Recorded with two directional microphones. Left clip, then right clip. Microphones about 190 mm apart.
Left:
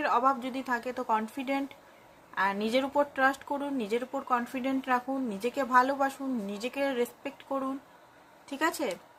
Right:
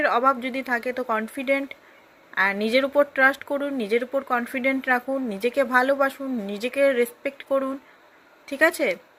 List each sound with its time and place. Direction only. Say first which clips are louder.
0.0 s speech: right 6 dB; 15° right (ahead or behind)